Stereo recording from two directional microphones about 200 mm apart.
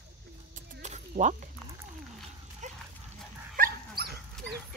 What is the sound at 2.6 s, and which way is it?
Dog, 35° right (ahead or behind).